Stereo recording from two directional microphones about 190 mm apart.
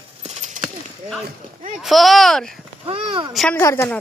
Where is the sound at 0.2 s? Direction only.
35° right (ahead or behind).